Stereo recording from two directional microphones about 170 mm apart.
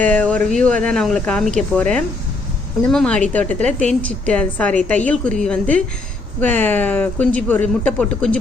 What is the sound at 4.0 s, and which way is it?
Speech, 5° left (ahead or behind).